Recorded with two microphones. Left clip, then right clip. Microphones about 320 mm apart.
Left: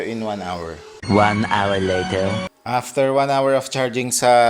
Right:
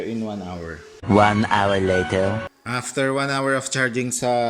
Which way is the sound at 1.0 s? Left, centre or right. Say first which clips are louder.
Even; centre.